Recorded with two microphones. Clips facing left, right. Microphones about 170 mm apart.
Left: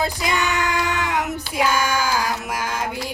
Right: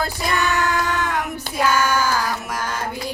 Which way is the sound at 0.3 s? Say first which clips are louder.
Right 4 dB; 15° left (ahead or behind).